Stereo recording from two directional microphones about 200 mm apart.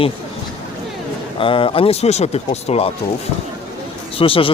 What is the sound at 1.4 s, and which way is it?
Speech, 25° left (ahead or behind).